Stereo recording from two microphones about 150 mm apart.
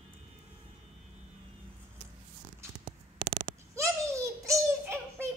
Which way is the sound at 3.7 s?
20° right (ahead or behind).